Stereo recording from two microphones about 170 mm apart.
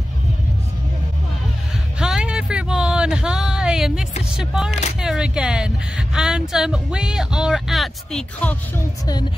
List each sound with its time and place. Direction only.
2.0 s music: 5° right (ahead or behind)
4.3 s a woman's voice: 5° right (ahead or behind)
4.6 s speech: 40° left (ahead or behind)
5.0 s a woman's voice: 5° right (ahead or behind)